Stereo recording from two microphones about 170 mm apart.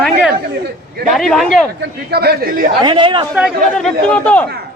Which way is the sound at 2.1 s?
70° right (ahead or behind).